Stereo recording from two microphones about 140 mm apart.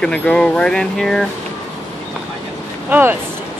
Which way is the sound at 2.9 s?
15° right (ahead or behind).